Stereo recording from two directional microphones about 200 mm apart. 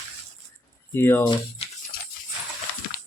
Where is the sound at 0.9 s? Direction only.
10° left (ahead or behind).